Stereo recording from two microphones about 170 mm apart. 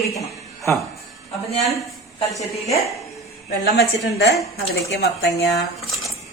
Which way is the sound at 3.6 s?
80° left.